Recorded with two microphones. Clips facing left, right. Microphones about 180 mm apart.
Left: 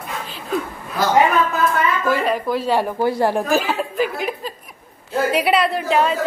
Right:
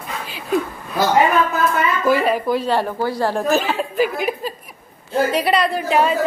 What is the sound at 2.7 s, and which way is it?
Speech, 10° left (ahead or behind).